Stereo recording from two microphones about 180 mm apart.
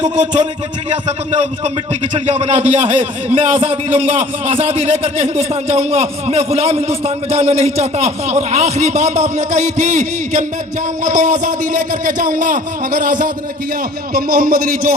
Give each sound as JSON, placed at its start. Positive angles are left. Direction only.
{"t": 0.0, "sound": "a man's voice", "side_deg": -40}